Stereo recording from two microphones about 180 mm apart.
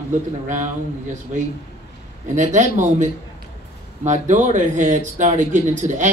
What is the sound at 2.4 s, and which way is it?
Speech, 40° right (ahead or behind).